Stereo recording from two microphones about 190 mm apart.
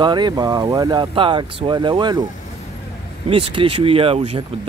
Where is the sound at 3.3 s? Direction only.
30° right (ahead or behind).